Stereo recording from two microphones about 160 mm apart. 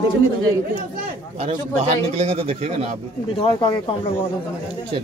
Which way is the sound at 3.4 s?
30° left (ahead or behind).